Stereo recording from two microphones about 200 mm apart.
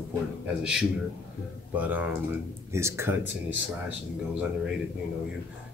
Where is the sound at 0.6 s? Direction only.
5° right (ahead or behind).